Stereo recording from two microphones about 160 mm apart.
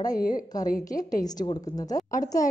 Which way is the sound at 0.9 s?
60° left (ahead or behind).